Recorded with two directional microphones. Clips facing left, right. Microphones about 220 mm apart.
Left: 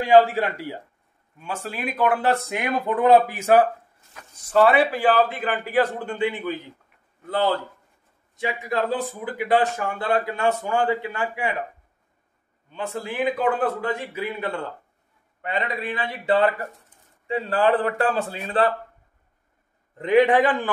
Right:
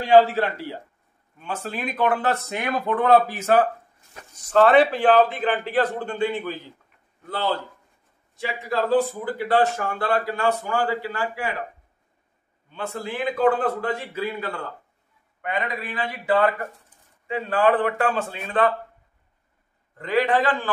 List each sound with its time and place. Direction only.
0.0 s a man's voice: 15° left (ahead or behind)
8.4 s a man's voice: 20° left (ahead or behind)
12.7 s a man's voice: 15° left (ahead or behind); by 18.7 s 35° left (ahead or behind)
20.0 s a man's voice: 20° left (ahead or behind)